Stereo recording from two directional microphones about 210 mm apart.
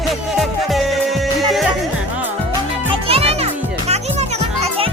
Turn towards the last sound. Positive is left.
turn(degrees=-30)  # may be behind; listen again after turning